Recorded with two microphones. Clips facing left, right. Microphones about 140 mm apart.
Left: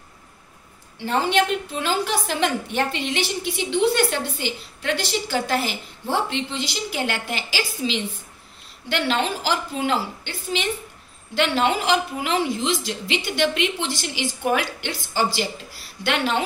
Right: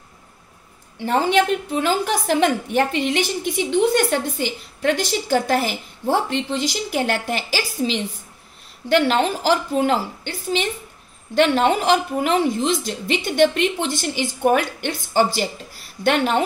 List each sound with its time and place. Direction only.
1.0 s a woman's voice: 40° right (ahead or behind)